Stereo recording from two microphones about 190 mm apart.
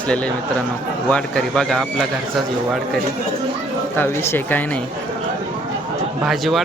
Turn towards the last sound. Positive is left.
turn(degrees=0)  # may be behind; listen again after turning